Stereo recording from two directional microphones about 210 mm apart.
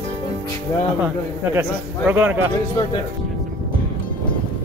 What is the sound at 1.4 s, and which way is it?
Speech, 10° right (ahead or behind).